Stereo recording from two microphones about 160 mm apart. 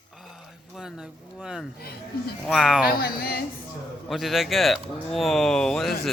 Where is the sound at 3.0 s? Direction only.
70° left (ahead or behind).